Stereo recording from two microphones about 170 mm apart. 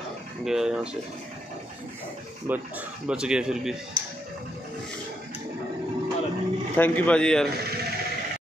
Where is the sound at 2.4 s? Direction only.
10° right (ahead or behind).